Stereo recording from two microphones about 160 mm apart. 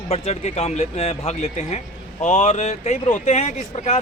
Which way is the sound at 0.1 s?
40° left (ahead or behind).